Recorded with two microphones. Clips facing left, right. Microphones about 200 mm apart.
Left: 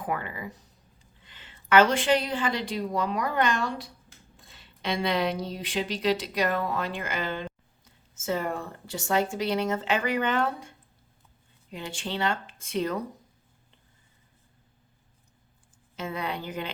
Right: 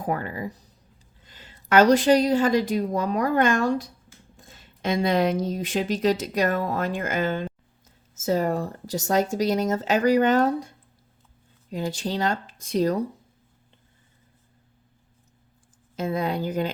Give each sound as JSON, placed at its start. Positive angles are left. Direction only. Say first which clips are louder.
{"t": 0.0, "sound": "speech", "louder": "right 4 dB", "side_deg": -40}
{"t": 16.0, "sound": "speech", "louder": "right 7 dB", "side_deg": -40}